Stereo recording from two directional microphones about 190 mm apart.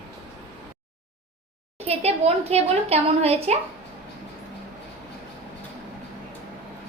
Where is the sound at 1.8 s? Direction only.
35° right (ahead or behind).